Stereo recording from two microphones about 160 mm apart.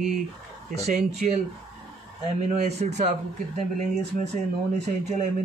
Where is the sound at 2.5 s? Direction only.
40° right (ahead or behind).